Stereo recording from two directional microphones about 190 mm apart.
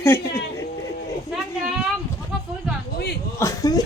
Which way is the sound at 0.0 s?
10° left (ahead or behind).